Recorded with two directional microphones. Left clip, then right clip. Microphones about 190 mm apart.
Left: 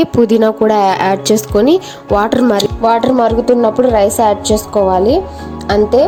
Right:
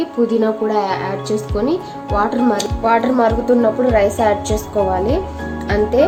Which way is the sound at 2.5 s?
35° left (ahead or behind).